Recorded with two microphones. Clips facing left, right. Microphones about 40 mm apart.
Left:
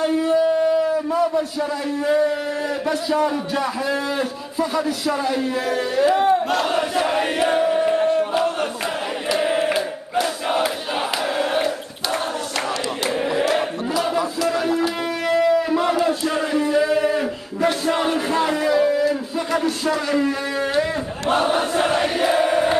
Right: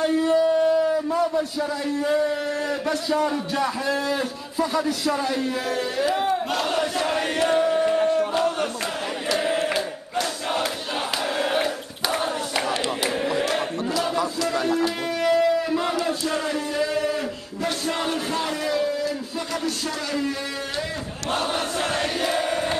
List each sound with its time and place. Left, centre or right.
0.0 s a sound: centre
2.9 s a man's voice: centre
6.3 s chant: centre
9.3 s crowd: centre
13.0 s chant: centre
16.3 s a sound: left
21.3 s chant: left